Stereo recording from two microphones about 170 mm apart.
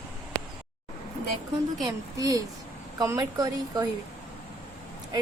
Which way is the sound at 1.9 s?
20° right (ahead or behind).